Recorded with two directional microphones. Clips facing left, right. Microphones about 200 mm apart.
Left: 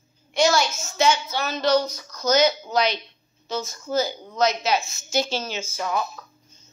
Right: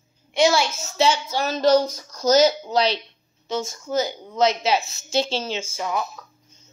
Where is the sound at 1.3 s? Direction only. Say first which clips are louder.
Right 3 dB; 45° right (ahead or behind).